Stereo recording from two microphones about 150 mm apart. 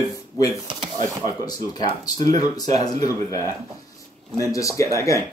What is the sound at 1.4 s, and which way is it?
Speech, 25° left (ahead or behind).